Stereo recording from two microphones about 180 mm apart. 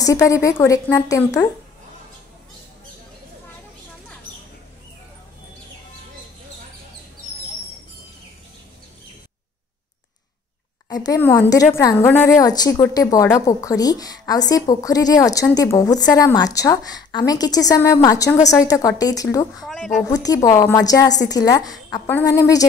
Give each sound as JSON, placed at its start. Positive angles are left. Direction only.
{"t": 0.0, "sound": "a woman's voice", "side_deg": 20}
{"t": 11.1, "sound": "a woman's voice", "side_deg": 10}
{"t": 19.6, "sound": "speech", "side_deg": 0}
{"t": 20.1, "sound": "a woman's voice", "side_deg": 20}